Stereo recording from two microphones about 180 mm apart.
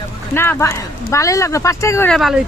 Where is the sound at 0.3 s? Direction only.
15° left (ahead or behind).